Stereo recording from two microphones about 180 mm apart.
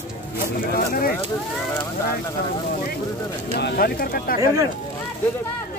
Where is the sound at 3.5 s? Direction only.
65° left (ahead or behind).